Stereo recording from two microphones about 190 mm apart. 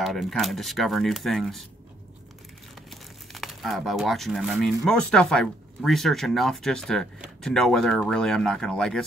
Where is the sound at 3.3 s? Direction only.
Centre (ahead or behind).